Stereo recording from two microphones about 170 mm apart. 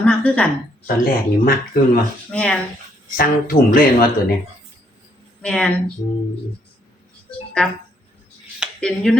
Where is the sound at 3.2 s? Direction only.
55° left (ahead or behind).